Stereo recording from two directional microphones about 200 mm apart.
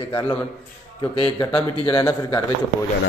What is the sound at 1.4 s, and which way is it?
A man's voice, 25° left (ahead or behind).